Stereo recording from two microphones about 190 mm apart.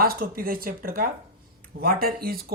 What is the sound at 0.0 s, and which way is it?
Speech, 50° right (ahead or behind).